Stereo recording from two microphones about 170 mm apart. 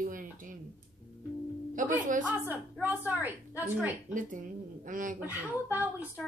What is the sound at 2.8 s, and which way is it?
Speech, 10° right (ahead or behind).